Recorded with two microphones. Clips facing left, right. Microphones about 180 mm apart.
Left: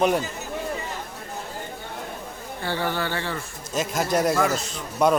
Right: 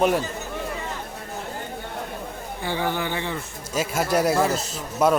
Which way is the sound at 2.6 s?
15° right (ahead or behind).